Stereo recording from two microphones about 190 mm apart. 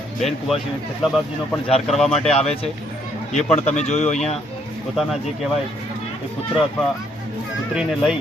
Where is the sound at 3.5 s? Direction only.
35° left (ahead or behind).